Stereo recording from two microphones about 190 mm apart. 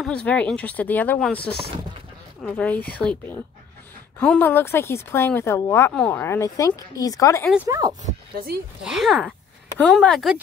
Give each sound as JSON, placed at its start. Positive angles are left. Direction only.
{"t": 0.0, "sound": "speech", "side_deg": 5}
{"t": 7.6, "sound": "speech", "side_deg": -15}
{"t": 8.8, "sound": "speech", "side_deg": 0}